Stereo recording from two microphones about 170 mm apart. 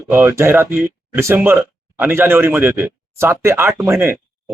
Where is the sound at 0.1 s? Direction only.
10° right (ahead or behind).